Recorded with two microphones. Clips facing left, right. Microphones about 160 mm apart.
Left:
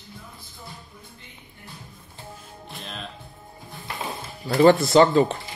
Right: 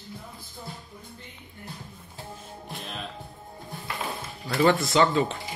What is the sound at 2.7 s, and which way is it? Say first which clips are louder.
Music: even; 5° right (ahead or behind).